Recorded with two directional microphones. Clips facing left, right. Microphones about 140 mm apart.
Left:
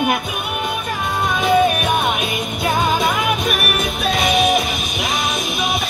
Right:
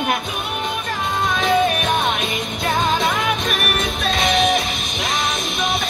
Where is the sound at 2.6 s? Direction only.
Centre (ahead or behind).